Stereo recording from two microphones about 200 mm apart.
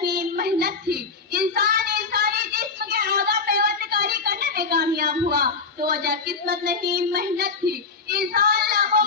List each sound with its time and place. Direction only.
0.0 s child singing: 50° right (ahead or behind)